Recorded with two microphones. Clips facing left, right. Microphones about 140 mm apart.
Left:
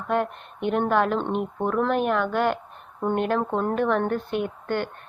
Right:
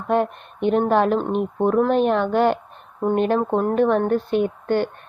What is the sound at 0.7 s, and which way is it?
Speech, 20° right (ahead or behind).